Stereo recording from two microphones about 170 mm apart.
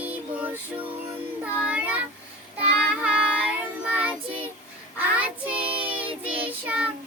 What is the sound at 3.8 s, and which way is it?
Child singing, 10° right (ahead or behind).